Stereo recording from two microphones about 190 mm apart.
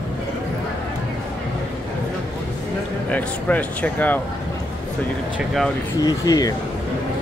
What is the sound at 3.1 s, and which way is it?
Speech, 10° left (ahead or behind).